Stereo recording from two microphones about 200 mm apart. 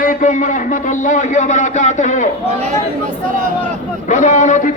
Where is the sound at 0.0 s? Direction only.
40° left (ahead or behind).